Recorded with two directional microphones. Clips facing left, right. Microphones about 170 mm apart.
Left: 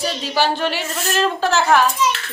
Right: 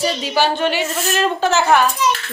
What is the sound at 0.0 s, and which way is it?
A woman's voice, centre (ahead or behind).